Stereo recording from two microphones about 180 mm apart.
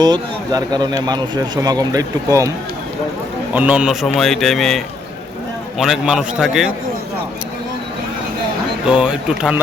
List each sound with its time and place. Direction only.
0.0 s speech: 20° right (ahead or behind)
3.5 s a man's voice: 10° right (ahead or behind)
5.8 s a man's voice: 5° right (ahead or behind)
8.9 s a man's voice: 5° right (ahead or behind)